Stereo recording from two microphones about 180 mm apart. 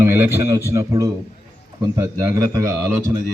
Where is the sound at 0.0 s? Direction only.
15° right (ahead or behind).